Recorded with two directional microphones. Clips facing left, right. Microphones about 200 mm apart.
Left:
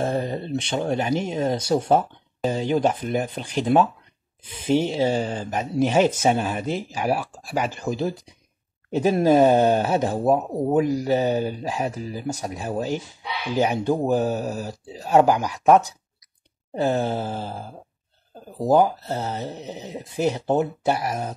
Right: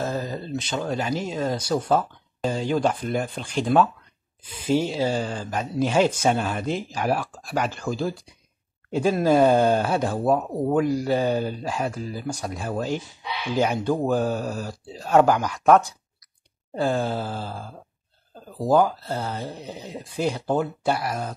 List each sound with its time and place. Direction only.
0.0 s speech: 30° left (ahead or behind)
2.7 s speech: 15° left (ahead or behind)